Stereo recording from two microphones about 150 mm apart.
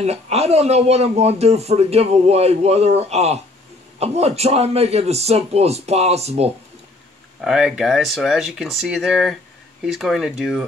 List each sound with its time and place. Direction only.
0.0 s speech: 45° right (ahead or behind)
7.4 s speech: 5° right (ahead or behind)